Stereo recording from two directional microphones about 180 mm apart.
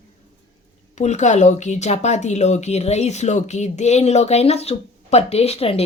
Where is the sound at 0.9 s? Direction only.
40° left (ahead or behind).